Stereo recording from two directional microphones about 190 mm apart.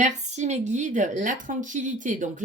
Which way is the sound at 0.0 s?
40° right (ahead or behind).